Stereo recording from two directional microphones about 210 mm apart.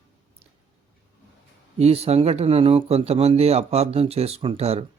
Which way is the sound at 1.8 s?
30° right (ahead or behind).